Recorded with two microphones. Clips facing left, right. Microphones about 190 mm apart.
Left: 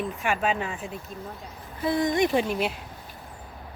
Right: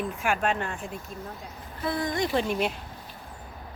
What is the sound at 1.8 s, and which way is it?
Speech, 20° left (ahead or behind).